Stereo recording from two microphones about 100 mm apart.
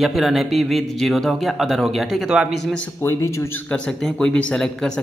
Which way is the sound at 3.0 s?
30° left (ahead or behind).